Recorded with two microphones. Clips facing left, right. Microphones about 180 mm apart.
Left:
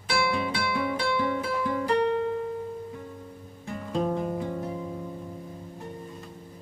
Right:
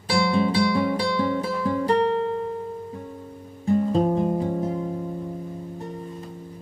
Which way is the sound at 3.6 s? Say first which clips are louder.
Right 9 dB; 35° right (ahead or behind).